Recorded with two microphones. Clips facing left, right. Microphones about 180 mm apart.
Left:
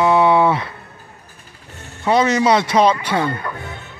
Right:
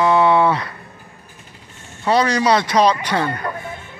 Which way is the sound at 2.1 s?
20° left (ahead or behind).